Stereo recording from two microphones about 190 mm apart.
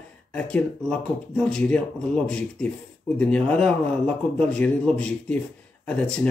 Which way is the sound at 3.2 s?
5° left (ahead or behind).